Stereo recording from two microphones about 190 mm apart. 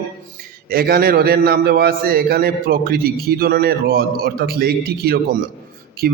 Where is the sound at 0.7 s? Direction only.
50° right (ahead or behind).